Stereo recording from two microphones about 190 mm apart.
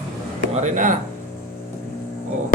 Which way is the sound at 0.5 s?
40° right (ahead or behind).